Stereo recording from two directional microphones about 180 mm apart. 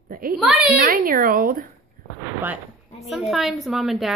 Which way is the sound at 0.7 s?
50° right (ahead or behind).